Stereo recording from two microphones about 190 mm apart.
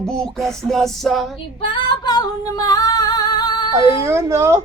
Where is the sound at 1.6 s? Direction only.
25° left (ahead or behind).